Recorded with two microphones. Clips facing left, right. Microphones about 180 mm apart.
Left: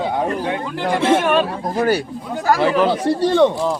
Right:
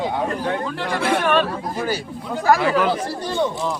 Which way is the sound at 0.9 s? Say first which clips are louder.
Left 5 dB; 25° left (ahead or behind).